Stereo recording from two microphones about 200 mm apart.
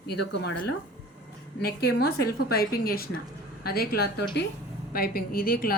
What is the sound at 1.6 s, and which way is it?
A woman's voice, 50° left (ahead or behind).